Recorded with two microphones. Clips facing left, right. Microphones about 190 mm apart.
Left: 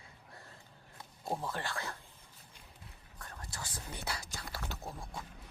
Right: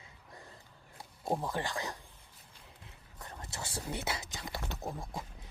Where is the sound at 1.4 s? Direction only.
15° right (ahead or behind).